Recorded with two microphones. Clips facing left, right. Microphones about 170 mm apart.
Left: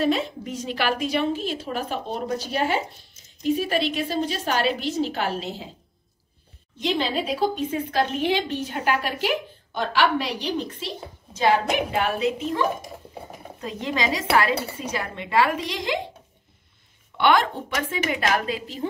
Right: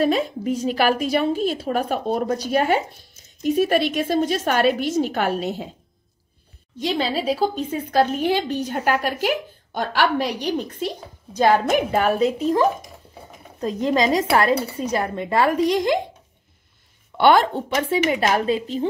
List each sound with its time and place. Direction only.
0.7 s a woman's voice: 45° right (ahead or behind)
6.8 s a woman's voice: 40° right (ahead or behind)
17.2 s a woman's voice: 35° right (ahead or behind)